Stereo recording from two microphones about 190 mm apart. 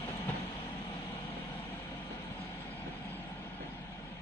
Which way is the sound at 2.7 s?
10° left (ahead or behind).